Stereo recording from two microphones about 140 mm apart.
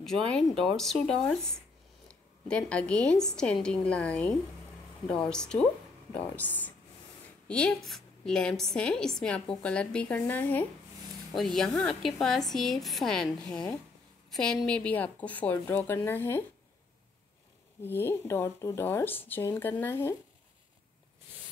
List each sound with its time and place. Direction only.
0.0 s a woman's voice: 5° left (ahead or behind)
11.3 s a woman's voice: centre (ahead or behind)
17.8 s a woman's voice: 15° left (ahead or behind)